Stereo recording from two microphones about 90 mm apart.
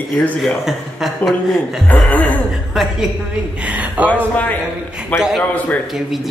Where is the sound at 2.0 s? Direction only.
20° left (ahead or behind).